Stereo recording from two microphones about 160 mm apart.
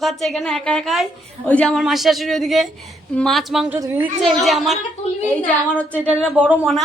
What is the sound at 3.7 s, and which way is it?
Speech, 15° right (ahead or behind).